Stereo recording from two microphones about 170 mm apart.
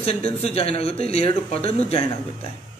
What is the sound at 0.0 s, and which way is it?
A man's voice, 35° left (ahead or behind).